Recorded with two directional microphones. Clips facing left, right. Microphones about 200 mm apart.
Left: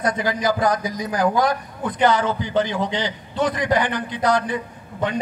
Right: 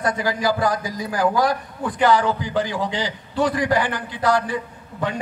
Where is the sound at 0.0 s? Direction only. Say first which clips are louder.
Even; 20° left (ahead or behind).